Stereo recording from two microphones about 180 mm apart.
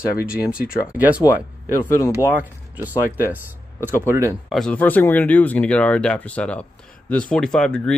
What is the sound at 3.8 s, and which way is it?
Speech, 15° right (ahead or behind).